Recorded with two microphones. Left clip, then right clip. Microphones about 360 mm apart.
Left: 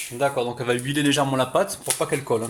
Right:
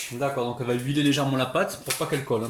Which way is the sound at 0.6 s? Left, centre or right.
Left.